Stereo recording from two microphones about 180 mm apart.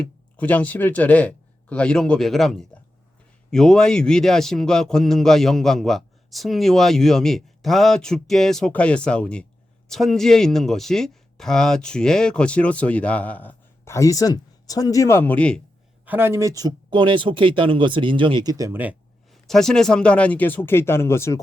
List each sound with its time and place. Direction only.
0.3 s a man's voice: 10° left (ahead or behind)
16.0 s speech: 10° right (ahead or behind)
19.3 s speech: centre (ahead or behind)